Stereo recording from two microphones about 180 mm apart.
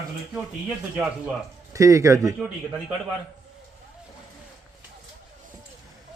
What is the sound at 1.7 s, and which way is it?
Speech, 15° right (ahead or behind).